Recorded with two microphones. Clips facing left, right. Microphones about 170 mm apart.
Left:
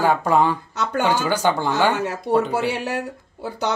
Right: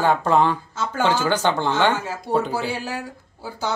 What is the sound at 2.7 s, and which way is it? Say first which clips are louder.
Speech: left 3 dB; 70° left (ahead or behind).